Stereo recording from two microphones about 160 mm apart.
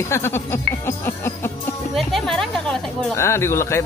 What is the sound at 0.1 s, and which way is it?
Speech, 15° left (ahead or behind).